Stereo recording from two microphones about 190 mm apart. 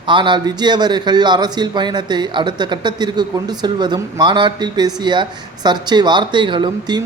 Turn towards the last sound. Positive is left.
turn(degrees=-25)  # may be behind; listen again after turning